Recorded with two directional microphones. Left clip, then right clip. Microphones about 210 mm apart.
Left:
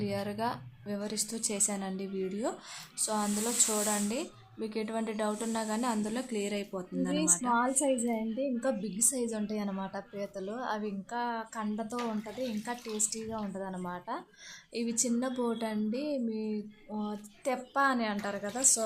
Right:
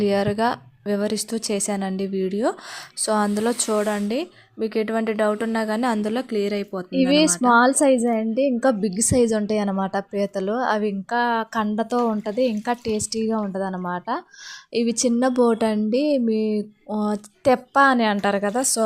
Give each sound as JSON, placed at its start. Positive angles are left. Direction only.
{"t": 0.0, "sound": "a woman's voice", "side_deg": -35}